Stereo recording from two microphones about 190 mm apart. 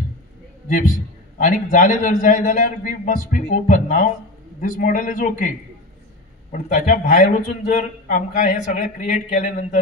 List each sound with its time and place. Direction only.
0.7 s a man's voice: 45° left (ahead or behind)